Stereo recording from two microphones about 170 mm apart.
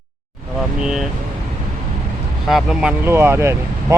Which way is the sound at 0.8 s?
5° right (ahead or behind).